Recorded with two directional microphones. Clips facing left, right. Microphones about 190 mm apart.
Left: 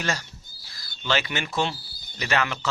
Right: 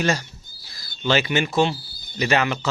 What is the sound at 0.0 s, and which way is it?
A man's voice, 15° right (ahead or behind).